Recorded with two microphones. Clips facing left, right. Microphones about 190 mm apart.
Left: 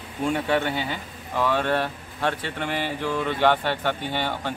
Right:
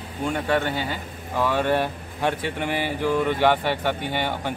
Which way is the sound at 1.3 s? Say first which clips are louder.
Right 1 dB; 10° right (ahead or behind).